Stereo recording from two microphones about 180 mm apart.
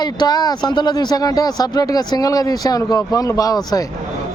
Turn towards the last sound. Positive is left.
turn(degrees=20)  # may be behind; listen again after turning